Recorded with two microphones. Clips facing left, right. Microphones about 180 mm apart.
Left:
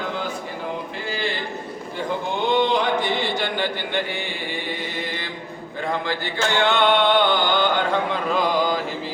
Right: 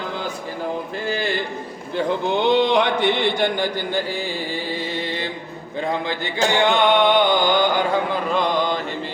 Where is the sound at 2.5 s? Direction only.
70° right (ahead or behind); by 3.6 s 55° right (ahead or behind).